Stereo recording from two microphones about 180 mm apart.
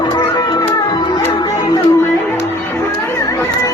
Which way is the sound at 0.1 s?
20° left (ahead or behind).